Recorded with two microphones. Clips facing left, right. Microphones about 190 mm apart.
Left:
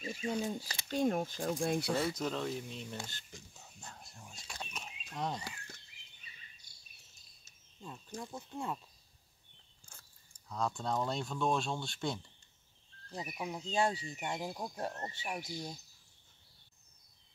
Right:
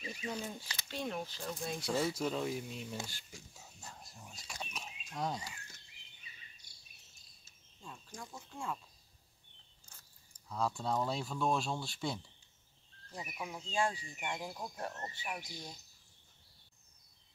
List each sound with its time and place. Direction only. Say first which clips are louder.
0.2 s speech: left 6 dB; 25° left (ahead or behind)
0.6 s speech: left 8 dB; 40° left (ahead or behind); by 2.0 s 60° left (ahead or behind)
2.0 s a sound: even; 5° right (ahead or behind)
5.1 s speech: even; centre (ahead or behind)
7.8 s speech: left 5 dB; 20° left (ahead or behind)
10.5 s speech: even; centre (ahead or behind)
13.1 s speech: left 3 dB; 20° left (ahead or behind)
13.7 s speech: left 2 dB; 35° left (ahead or behind)
14.3 s speech: left 3 dB; 25° left (ahead or behind)